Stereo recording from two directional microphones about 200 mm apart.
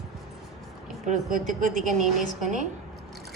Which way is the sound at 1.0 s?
40° right (ahead or behind).